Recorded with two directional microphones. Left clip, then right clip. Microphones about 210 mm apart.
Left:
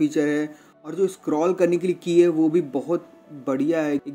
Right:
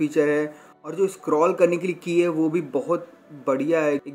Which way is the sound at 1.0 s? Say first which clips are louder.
Right 2 dB; 10° left (ahead or behind).